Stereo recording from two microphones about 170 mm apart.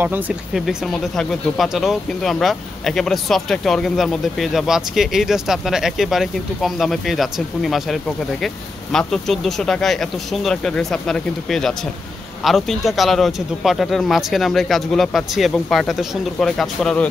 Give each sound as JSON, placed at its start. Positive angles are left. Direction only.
{"t": 0.0, "sound": "speech", "side_deg": -10}
{"t": 0.5, "sound": "speech", "side_deg": 0}